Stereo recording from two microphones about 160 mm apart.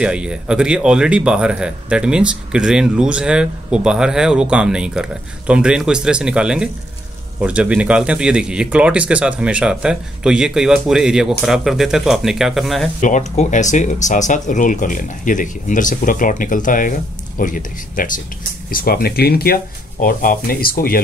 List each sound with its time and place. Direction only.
0.0 s speech: 5° right (ahead or behind)
13.0 s speech: 50° left (ahead or behind); by 21.0 s 65° left (ahead or behind)